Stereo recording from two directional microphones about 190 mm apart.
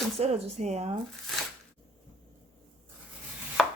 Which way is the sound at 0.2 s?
35° right (ahead or behind).